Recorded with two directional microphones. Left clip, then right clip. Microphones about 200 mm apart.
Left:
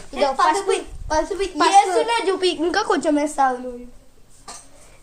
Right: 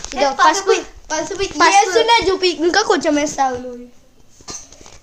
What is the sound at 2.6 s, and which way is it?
Speech, 25° right (ahead or behind).